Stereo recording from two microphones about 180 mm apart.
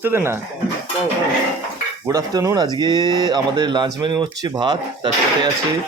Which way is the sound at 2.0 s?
20° right (ahead or behind).